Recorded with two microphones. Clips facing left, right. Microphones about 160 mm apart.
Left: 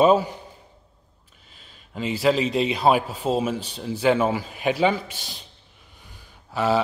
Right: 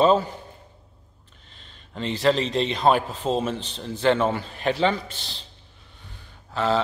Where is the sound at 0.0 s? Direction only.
10° left (ahead or behind).